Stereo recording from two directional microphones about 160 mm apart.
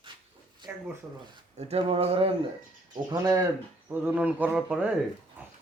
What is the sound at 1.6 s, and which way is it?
Speech, 40° right (ahead or behind).